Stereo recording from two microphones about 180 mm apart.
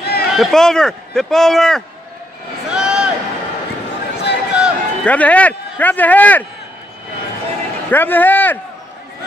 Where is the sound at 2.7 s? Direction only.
5° right (ahead or behind).